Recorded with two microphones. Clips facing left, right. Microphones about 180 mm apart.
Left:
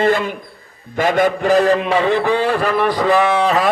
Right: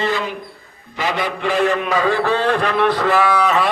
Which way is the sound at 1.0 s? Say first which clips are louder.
Left 7 dB; 50° left (ahead or behind).